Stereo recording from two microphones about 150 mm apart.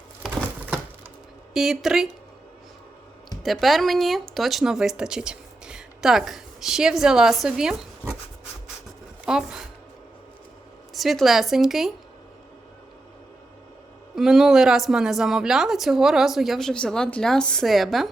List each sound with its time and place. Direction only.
1.5 s speech: 5° right (ahead or behind)
3.4 s speech: centre (ahead or behind)
9.2 s speech: 5° right (ahead or behind)
10.9 s speech: centre (ahead or behind)
14.2 s speech: 5° right (ahead or behind)